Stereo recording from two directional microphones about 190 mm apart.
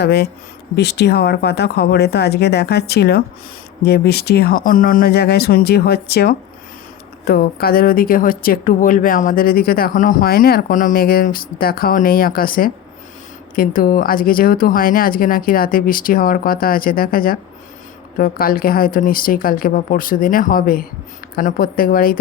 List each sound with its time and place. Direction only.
0.0 s speech: 60° left (ahead or behind)